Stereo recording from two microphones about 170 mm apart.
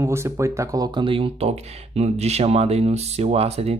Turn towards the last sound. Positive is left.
turn(degrees=-40)  # may be behind; listen again after turning